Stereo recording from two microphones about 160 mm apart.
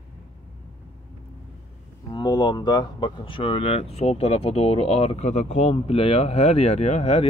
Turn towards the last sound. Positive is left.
turn(degrees=45)  # may be behind; listen again after turning